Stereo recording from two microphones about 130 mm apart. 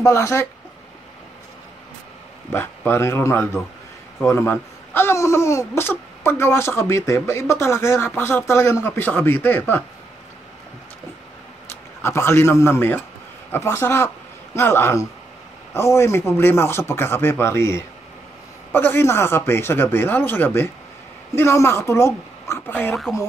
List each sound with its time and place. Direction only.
0.0 s speech: 20° left (ahead or behind)
2.5 s speech: 15° left (ahead or behind)
12.0 s speech: 20° left (ahead or behind)